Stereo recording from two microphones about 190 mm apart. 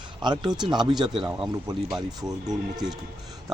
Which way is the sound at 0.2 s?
20° right (ahead or behind).